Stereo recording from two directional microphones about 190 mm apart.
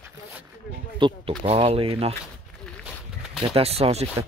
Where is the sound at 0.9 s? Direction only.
25° right (ahead or behind).